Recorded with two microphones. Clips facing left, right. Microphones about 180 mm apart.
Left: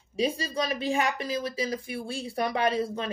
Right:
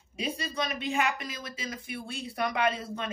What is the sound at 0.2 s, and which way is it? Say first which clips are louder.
Speech: left 5 dB; 30° left (ahead or behind).